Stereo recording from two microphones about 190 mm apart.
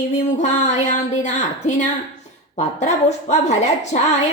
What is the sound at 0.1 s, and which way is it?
Speech, 40° left (ahead or behind).